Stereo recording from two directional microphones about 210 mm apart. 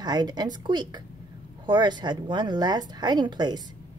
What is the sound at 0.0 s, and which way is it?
A woman's voice, 20° right (ahead or behind).